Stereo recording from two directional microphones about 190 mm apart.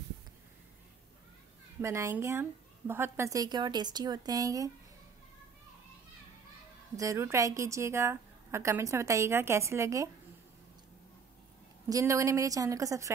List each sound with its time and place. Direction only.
1.8 s a woman's voice: 15° right (ahead or behind)
7.0 s a woman's voice: 15° right (ahead or behind)
11.9 s a woman's voice: 15° right (ahead or behind)